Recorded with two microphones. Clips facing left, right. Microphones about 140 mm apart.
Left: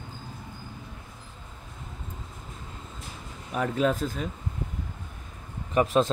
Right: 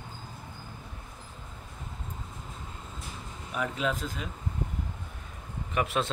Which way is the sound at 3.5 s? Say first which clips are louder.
Left 5 dB; 40° left (ahead or behind).